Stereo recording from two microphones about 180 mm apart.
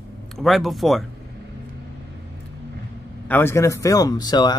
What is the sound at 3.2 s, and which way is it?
Speech, 10° left (ahead or behind).